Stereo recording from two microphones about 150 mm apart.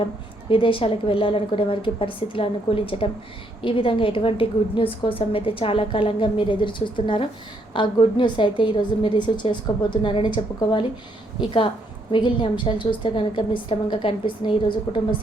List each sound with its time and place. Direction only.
0.5 s a woman's voice: 35° left (ahead or behind)
12.1 s a woman's voice: 30° left (ahead or behind)